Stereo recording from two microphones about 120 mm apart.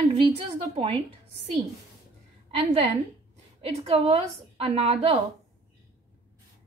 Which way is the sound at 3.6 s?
55° right (ahead or behind).